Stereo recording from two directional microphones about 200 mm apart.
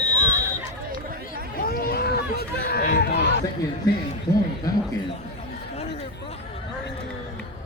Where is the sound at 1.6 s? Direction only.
45° left (ahead or behind).